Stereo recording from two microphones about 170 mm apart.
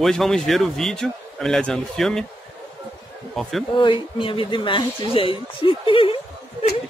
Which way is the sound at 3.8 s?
30° left (ahead or behind).